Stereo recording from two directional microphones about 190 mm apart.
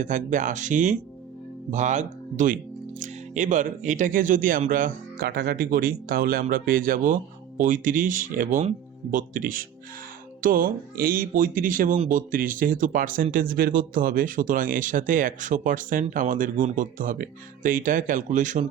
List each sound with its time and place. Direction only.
0.0 s speech: 40° right (ahead or behind)